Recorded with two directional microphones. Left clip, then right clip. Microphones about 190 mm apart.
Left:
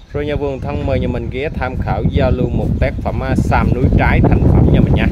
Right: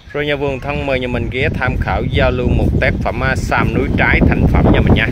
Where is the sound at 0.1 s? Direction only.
5° left (ahead or behind).